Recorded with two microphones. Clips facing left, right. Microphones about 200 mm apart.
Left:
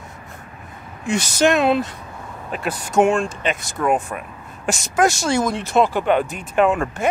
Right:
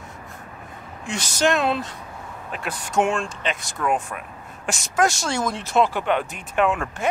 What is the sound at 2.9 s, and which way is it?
Speech, 5° left (ahead or behind).